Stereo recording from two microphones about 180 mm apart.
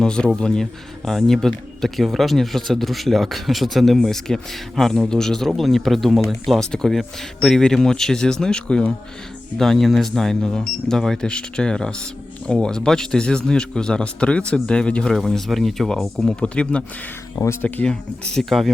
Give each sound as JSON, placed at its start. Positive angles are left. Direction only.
{"t": 0.0, "sound": "speech", "side_deg": 5}